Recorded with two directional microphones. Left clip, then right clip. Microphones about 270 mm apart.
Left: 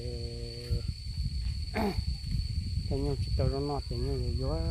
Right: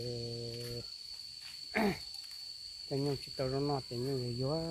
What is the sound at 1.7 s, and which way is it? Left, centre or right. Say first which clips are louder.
Speech: even; centre.